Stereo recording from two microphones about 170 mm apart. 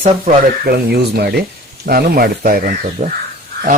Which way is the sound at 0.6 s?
70° right (ahead or behind).